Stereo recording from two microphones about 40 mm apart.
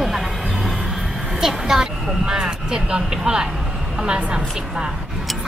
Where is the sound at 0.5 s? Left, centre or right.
Centre; by 3.0 s right.